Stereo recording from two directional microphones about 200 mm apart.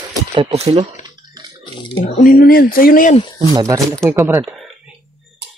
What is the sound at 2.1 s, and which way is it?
Speech, 45° left (ahead or behind).